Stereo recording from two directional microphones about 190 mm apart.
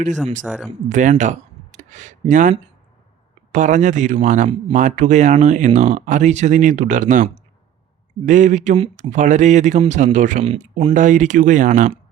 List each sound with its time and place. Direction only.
0.4 s speech: 5° right (ahead or behind)
0.9 s speech: 40° right (ahead or behind)